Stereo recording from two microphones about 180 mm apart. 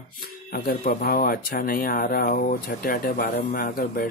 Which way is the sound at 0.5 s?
60° left (ahead or behind).